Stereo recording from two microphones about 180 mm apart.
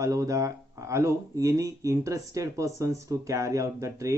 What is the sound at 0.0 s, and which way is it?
A man's voice, 20° right (ahead or behind).